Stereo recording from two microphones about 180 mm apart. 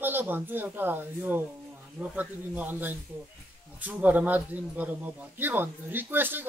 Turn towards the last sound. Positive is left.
turn(degrees=-10)  # may be behind; listen again after turning